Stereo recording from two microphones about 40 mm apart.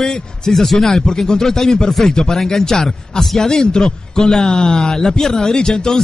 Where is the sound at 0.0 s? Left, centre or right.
Centre.